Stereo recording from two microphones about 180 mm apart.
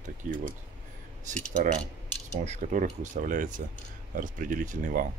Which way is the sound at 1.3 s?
45° right (ahead or behind).